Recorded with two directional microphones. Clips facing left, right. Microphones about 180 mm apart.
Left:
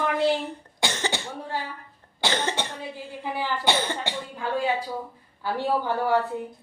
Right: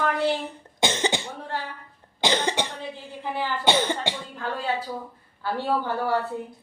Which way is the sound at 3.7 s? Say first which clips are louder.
Right 4 dB; 15° right (ahead or behind).